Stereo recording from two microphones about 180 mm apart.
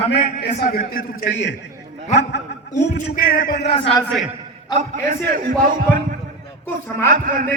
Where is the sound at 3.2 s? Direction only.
55° left (ahead or behind).